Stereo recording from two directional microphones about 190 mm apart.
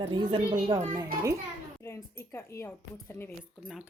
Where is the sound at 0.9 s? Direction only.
15° right (ahead or behind).